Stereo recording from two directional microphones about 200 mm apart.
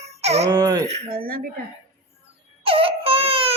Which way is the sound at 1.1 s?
45° right (ahead or behind).